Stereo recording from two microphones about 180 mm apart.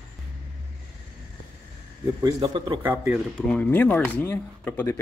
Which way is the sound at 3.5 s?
10° left (ahead or behind).